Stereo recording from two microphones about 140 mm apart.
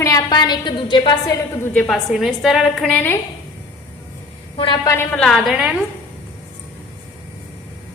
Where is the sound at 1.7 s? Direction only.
5° left (ahead or behind).